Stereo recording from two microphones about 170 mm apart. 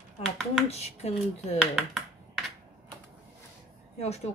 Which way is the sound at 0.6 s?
40° left (ahead or behind).